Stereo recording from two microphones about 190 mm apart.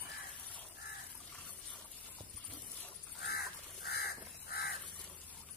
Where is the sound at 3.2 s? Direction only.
55° left (ahead or behind).